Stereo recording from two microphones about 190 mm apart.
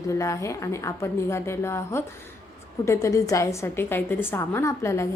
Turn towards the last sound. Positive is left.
turn(degrees=15)  # may be behind; listen again after turning